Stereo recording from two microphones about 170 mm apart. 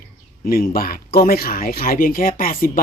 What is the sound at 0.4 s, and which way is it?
Speech, 60° left (ahead or behind).